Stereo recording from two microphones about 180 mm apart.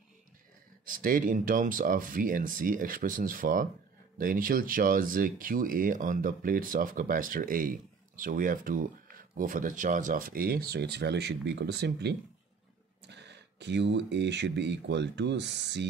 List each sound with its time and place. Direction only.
0.8 s speech: 50° right (ahead or behind); by 15.9 s 75° right (ahead or behind)